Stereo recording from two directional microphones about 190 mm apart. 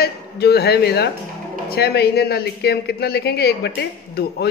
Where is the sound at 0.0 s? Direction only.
60° left (ahead or behind).